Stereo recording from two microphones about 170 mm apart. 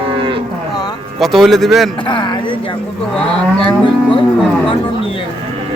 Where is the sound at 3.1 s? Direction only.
30° left (ahead or behind).